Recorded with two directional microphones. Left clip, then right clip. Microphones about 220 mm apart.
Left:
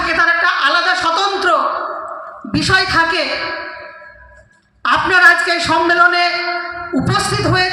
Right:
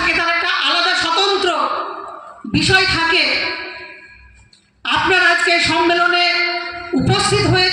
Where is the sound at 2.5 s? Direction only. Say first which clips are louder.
Even; 20° left (ahead or behind).